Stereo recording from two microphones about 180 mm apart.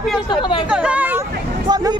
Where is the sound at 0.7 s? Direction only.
5° right (ahead or behind).